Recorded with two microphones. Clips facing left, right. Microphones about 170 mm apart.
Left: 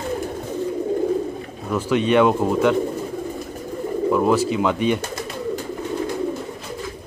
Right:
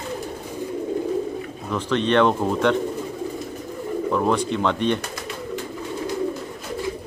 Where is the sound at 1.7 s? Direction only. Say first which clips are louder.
Left 3 dB; 10° left (ahead or behind).